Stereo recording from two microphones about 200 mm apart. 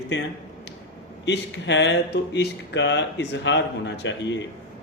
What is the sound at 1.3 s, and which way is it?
Speech, 60° left (ahead or behind).